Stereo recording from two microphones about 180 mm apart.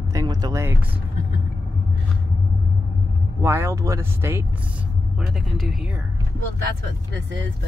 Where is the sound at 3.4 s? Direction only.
15° right (ahead or behind).